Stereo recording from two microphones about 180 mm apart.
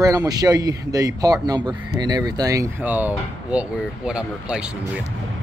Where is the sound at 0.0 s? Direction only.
20° right (ahead or behind).